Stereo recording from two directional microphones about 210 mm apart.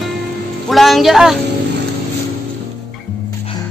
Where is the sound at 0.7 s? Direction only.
Centre (ahead or behind).